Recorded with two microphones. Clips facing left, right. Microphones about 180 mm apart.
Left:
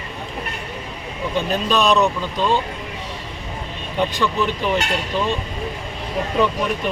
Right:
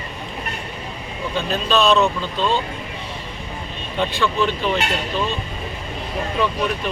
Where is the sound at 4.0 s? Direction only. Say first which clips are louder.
Even; 15° left (ahead or behind).